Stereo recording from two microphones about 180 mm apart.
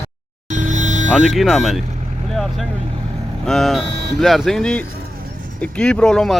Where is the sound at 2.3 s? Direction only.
Centre (ahead or behind).